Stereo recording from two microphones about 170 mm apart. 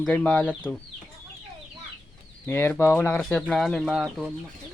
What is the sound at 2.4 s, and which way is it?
Speech, 15° left (ahead or behind).